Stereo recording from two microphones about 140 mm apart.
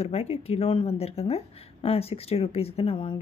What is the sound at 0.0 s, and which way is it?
A woman's voice, 45° left (ahead or behind).